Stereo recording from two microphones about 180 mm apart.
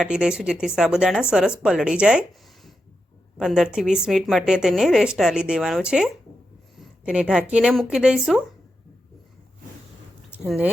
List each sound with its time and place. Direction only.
0.0 s a woman's voice: 5° right (ahead or behind)
3.3 s a woman's voice: centre (ahead or behind)
10.3 s speech: 5° right (ahead or behind)